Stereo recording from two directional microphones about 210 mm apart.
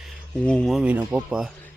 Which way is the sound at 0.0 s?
5° left (ahead or behind).